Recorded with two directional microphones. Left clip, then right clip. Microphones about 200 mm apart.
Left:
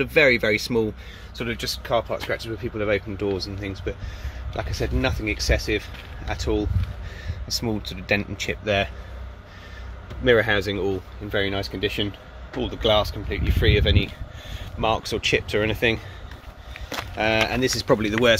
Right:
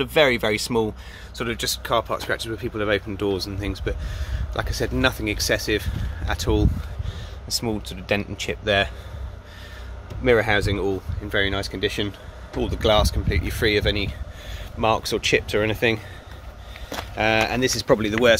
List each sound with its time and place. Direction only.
0.0 s speech: centre (ahead or behind)
7.5 s speech: 5° left (ahead or behind)
10.2 s speech: 5° left (ahead or behind)
12.5 s speech: 5° right (ahead or behind)